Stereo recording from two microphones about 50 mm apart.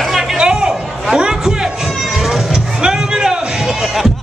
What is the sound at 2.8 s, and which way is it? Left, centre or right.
Music, centre.